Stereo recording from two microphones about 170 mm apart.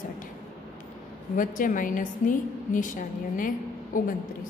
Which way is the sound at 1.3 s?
50° left (ahead or behind).